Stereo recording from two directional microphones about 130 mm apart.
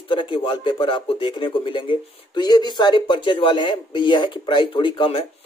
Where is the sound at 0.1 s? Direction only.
40° left (ahead or behind).